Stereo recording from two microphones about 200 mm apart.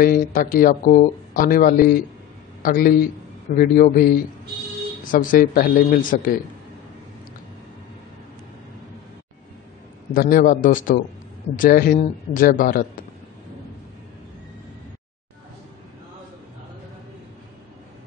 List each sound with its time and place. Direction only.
0.0 s speech: 45° left (ahead or behind)
10.1 s speech: 45° left (ahead or behind)